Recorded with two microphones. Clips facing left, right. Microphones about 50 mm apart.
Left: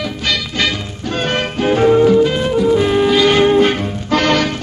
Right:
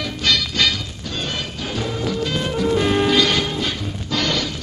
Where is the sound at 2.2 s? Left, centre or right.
Centre.